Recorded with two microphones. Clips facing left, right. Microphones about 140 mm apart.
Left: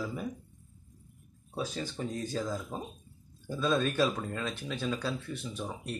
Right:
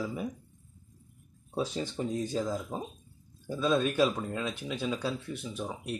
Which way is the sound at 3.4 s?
5° right (ahead or behind).